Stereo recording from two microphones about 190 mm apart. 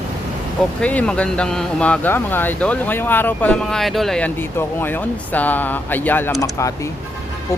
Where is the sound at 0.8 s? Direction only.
5° left (ahead or behind).